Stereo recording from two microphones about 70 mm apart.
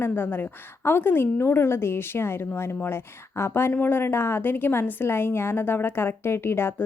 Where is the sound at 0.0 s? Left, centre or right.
Left.